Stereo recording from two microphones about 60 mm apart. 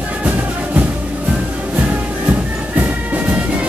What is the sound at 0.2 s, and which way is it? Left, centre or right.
Music, right.